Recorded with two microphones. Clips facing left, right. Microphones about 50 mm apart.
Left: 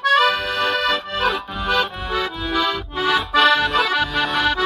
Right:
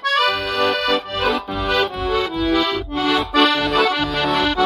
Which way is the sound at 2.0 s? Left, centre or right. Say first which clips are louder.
Right 3 dB; left.